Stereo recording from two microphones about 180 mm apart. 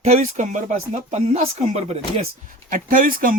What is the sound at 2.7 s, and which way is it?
Speech, 50° right (ahead or behind).